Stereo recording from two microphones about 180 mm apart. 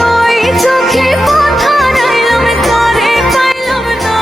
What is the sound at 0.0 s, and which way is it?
Music, centre (ahead or behind).